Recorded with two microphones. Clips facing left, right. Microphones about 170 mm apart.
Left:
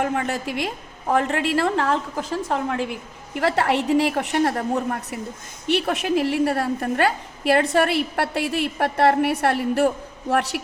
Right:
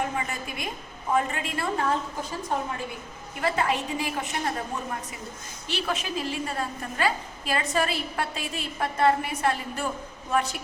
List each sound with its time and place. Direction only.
0.0 s a woman's voice: 70° left (ahead or behind)